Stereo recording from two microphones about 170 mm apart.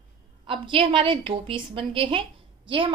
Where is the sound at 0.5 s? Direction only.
30° right (ahead or behind).